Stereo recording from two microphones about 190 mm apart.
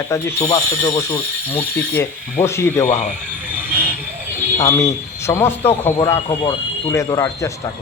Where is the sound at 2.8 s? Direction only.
40° left (ahead or behind).